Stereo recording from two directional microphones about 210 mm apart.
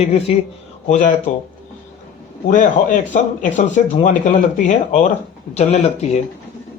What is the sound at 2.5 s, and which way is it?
Speech, 40° left (ahead or behind).